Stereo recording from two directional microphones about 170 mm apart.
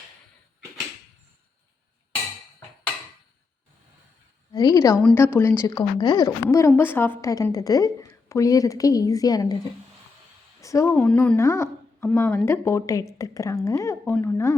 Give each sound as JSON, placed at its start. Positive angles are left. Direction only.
{"t": 4.5, "sound": "a woman's voice", "side_deg": 20}
{"t": 10.6, "sound": "a woman's voice", "side_deg": 20}